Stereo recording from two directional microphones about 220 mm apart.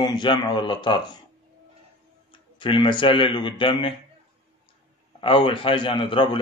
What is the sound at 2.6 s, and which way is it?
A man's voice, 25° left (ahead or behind).